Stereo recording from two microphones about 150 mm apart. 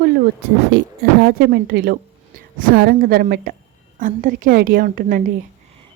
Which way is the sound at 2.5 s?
75° right (ahead or behind).